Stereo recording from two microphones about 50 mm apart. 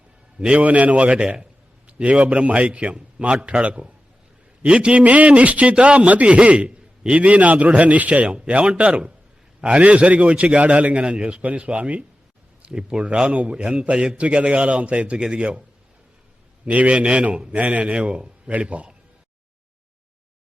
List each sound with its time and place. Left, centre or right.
0.3 s a man's voice: right
16.6 s a man's voice: right
17.9 s a man's voice: centre